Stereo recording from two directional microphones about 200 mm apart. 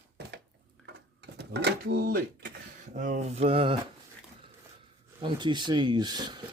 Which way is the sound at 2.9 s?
40° right (ahead or behind).